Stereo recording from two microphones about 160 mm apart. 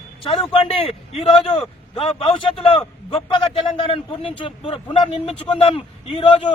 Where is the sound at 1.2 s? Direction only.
35° left (ahead or behind).